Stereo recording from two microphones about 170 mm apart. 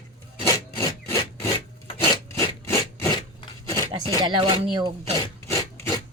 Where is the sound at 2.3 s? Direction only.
20° left (ahead or behind).